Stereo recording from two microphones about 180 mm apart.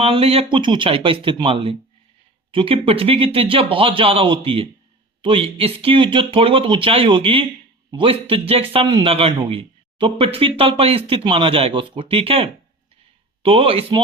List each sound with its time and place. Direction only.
0.0 s speech: 30° right (ahead or behind)